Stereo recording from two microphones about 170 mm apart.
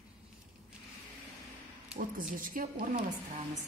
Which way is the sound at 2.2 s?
55° right (ahead or behind).